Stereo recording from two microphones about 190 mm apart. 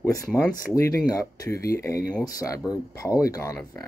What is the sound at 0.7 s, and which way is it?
Speech, 20° left (ahead or behind).